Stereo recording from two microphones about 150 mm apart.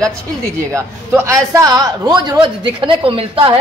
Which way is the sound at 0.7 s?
20° right (ahead or behind).